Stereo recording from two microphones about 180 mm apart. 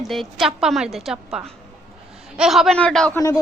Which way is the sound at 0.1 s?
Centre (ahead or behind).